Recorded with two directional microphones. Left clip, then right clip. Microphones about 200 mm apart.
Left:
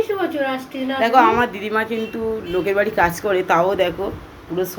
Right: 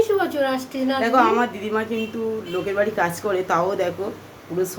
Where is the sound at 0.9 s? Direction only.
5° left (ahead or behind).